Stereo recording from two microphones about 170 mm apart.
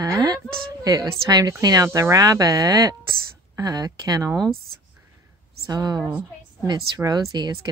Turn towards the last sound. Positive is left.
turn(degrees=-25)  # may be behind; listen again after turning